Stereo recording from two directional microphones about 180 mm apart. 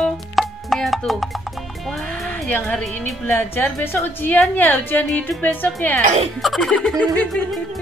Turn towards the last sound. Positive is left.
turn(degrees=5)  # may be behind; listen again after turning